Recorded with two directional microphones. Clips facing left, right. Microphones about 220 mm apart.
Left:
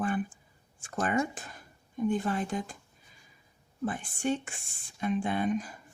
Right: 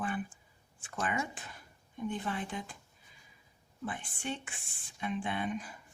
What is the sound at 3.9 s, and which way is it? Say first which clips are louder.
Speech: left 8 dB; 45° left (ahead or behind).